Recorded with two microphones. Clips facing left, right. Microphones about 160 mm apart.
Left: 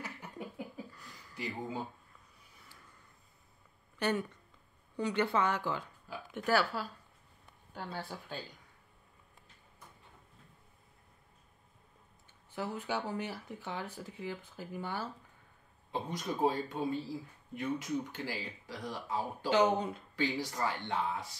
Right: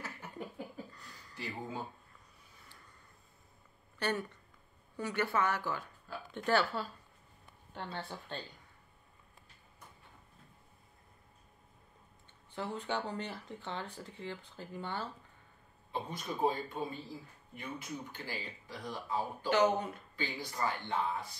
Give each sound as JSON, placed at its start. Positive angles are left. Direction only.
{"t": 0.9, "sound": "a sound", "side_deg": 5}
{"t": 4.0, "sound": "speech", "side_deg": 15}
{"t": 12.5, "sound": "speech", "side_deg": 5}
{"t": 15.9, "sound": "speech", "side_deg": 90}
{"t": 19.5, "sound": "speech", "side_deg": 20}
{"t": 20.2, "sound": "speech", "side_deg": 85}